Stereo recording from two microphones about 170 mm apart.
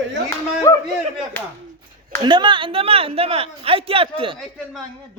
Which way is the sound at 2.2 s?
25° right (ahead or behind).